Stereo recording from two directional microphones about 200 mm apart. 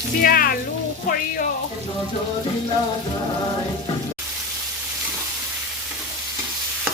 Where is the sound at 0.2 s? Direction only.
45° left (ahead or behind).